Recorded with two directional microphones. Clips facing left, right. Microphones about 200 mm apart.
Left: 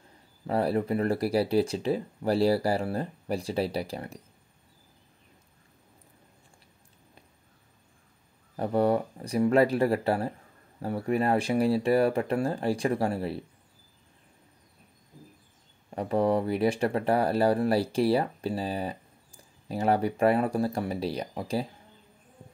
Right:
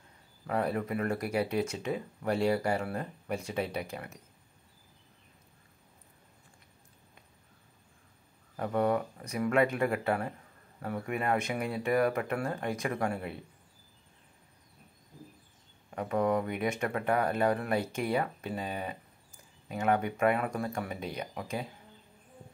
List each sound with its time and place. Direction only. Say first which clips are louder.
0.5 s speech: left 5 dB; 30° left (ahead or behind)
8.5 s speech: left 4 dB; 35° left (ahead or behind)
15.9 s speech: left 4 dB; 30° left (ahead or behind)